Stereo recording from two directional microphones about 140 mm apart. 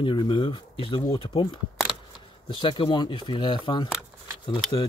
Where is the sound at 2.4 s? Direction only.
35° left (ahead or behind).